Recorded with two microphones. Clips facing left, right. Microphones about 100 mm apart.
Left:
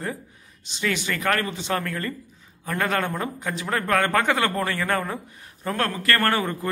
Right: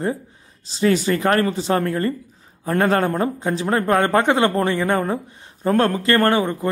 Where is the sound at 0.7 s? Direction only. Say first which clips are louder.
Right 9 dB; 35° right (ahead or behind).